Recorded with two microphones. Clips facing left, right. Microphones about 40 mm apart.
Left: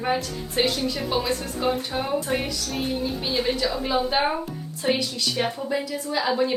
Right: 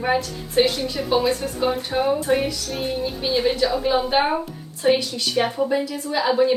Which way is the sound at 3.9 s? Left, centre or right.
Centre.